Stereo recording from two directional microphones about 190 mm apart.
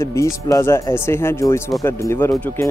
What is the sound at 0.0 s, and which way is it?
Speech, 15° left (ahead or behind).